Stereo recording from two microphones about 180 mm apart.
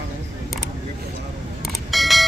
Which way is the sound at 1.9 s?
Centre (ahead or behind).